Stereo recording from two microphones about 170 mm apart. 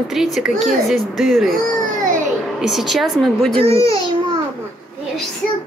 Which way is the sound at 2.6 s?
Centre (ahead or behind).